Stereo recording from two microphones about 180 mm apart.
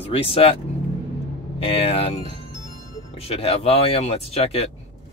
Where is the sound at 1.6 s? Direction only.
30° left (ahead or behind).